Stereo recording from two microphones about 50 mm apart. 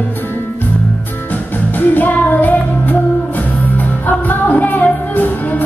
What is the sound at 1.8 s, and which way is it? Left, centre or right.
Music, left.